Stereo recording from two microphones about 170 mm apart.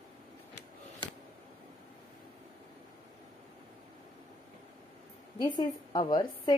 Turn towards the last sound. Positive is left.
turn(degrees=25)  # may be behind; listen again after turning